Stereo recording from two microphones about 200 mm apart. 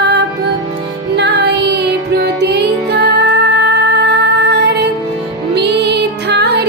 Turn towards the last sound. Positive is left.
turn(degrees=-55)  # may be behind; listen again after turning